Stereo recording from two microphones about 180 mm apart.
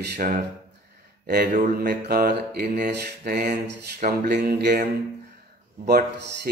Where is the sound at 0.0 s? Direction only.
65° right (ahead or behind).